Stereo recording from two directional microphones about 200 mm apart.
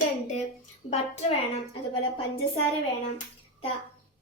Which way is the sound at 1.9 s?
25° left (ahead or behind).